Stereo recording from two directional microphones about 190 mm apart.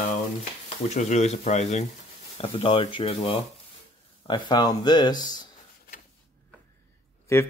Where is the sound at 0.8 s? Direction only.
35° left (ahead or behind).